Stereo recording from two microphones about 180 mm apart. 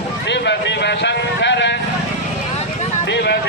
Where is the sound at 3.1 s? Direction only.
65° left (ahead or behind).